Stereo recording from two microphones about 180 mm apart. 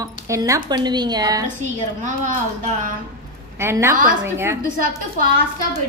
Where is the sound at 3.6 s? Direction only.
15° right (ahead or behind).